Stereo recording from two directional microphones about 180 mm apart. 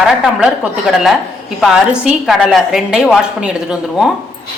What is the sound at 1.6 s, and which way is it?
A woman's voice, centre (ahead or behind).